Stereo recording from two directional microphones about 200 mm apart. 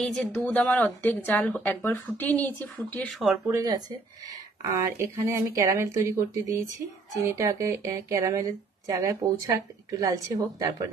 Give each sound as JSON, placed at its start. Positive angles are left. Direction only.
{"t": 0.0, "sound": "a woman's voice", "side_deg": 5}
{"t": 3.5, "sound": "speech", "side_deg": -20}